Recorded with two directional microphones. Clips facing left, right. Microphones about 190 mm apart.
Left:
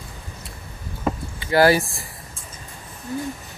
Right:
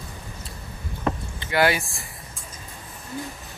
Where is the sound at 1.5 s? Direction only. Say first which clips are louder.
Left 5 dB; 35° left (ahead or behind).